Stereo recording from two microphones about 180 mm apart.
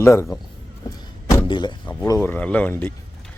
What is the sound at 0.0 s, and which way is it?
Speech, 15° left (ahead or behind).